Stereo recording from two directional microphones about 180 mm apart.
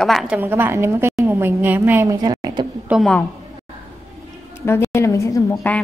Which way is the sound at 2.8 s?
5° right (ahead or behind).